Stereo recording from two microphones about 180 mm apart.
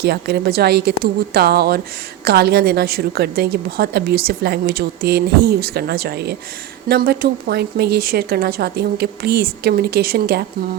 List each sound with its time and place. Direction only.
0.0 s a woman's voice: 65° right (ahead or behind)